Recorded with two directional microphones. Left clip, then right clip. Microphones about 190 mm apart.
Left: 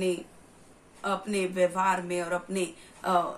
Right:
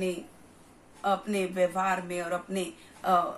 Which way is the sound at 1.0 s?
15° left (ahead or behind).